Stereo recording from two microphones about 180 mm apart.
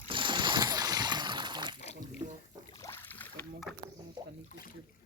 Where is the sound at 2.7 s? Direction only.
15° left (ahead or behind).